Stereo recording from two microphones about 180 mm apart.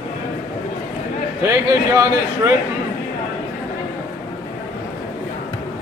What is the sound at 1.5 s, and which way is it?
A man's voice, 15° right (ahead or behind).